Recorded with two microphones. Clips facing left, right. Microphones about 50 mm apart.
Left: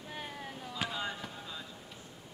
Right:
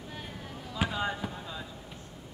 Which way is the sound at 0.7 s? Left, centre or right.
Centre.